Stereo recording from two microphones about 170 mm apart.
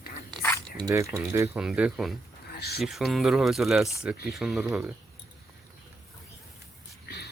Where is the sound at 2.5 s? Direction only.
70° left (ahead or behind).